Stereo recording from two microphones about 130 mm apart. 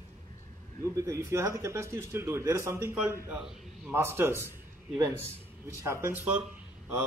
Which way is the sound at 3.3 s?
5° right (ahead or behind).